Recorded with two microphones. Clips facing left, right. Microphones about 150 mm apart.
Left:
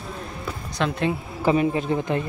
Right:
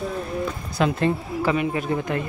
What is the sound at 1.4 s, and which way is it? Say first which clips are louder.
Speech: left 4 dB; 30° left (ahead or behind).